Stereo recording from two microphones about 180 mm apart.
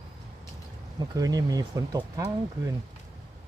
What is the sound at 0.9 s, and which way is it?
Speech, 20° right (ahead or behind).